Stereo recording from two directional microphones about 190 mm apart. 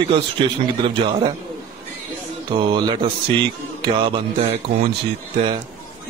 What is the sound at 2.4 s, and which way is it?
A man's voice, 25° right (ahead or behind).